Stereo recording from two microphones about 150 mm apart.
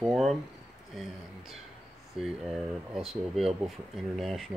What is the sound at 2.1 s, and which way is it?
Speech, centre (ahead or behind).